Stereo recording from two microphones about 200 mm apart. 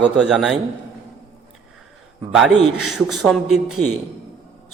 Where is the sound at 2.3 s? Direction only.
Centre (ahead or behind).